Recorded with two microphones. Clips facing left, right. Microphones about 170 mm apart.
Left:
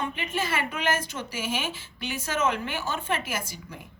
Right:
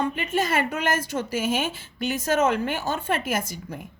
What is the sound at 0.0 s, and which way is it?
A woman's voice, 45° right (ahead or behind).